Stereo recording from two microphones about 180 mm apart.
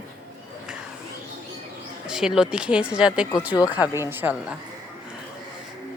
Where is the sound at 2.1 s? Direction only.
5° right (ahead or behind).